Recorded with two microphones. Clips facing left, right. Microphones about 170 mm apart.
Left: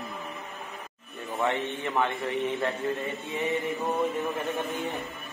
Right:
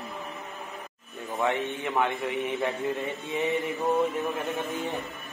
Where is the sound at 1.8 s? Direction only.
15° right (ahead or behind).